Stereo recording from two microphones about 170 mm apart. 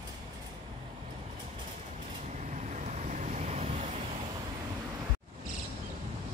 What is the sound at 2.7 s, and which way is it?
Vehicle, 45° right (ahead or behind).